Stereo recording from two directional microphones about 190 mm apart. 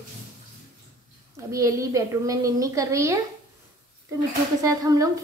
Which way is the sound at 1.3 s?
15° right (ahead or behind).